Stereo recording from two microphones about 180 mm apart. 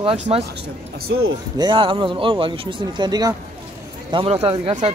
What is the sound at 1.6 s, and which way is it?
A man's voice, 25° right (ahead or behind).